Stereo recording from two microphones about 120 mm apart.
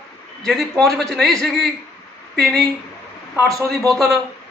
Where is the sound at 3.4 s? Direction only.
30° right (ahead or behind).